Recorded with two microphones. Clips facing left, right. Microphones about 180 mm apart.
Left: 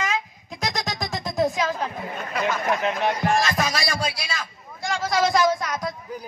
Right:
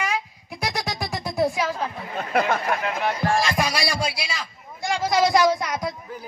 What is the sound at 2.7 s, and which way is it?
Speech, 20° left (ahead or behind).